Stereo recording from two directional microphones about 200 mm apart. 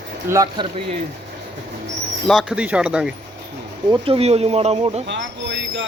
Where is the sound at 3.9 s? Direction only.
25° right (ahead or behind).